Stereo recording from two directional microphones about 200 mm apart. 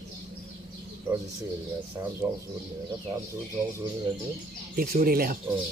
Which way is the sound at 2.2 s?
15° right (ahead or behind).